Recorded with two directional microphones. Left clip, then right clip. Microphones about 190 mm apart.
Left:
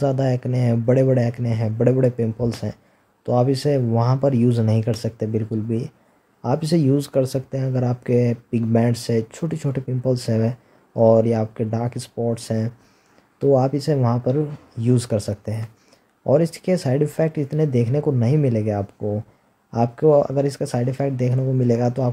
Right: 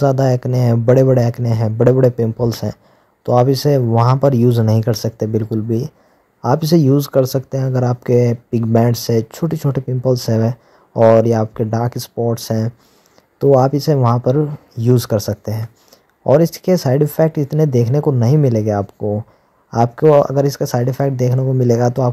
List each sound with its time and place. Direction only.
0.0 s speech: 30° right (ahead or behind)